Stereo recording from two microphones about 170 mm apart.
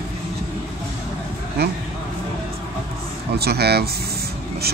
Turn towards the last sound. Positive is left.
turn(degrees=-70)  # may be behind; listen again after turning